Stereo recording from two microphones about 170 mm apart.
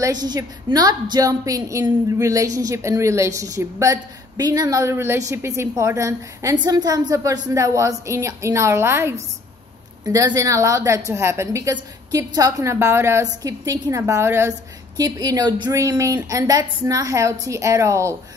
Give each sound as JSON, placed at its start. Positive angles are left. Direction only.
{"t": 0.0, "sound": "a woman's voice", "side_deg": -25}